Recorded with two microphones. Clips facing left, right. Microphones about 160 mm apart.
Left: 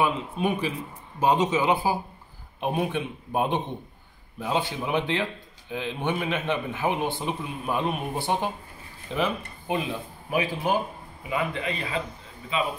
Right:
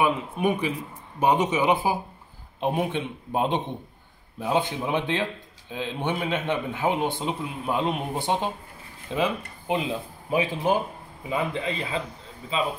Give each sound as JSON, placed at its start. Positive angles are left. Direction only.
{"t": 0.0, "sound": "a man's voice", "side_deg": -15}